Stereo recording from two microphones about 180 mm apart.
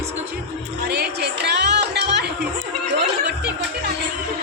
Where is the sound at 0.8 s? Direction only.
65° right (ahead or behind).